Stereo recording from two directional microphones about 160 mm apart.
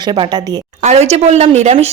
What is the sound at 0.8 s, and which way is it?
Speech, 45° right (ahead or behind).